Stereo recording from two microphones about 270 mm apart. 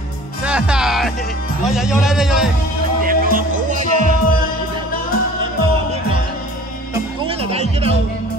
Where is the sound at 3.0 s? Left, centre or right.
Right.